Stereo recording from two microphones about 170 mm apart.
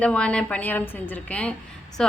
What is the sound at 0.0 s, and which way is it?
A woman's voice, 5° left (ahead or behind).